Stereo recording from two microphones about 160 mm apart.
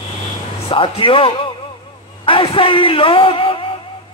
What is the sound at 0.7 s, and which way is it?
A man's voice, 35° left (ahead or behind).